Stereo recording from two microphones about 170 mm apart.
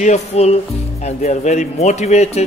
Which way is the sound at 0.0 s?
40° left (ahead or behind).